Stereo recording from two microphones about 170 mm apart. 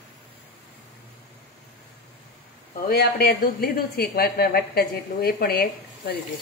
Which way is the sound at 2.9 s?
65° left (ahead or behind).